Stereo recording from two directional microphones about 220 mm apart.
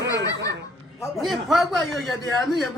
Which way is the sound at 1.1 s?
Centre (ahead or behind).